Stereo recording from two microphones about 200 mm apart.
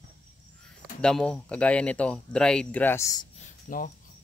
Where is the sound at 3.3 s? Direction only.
40° left (ahead or behind).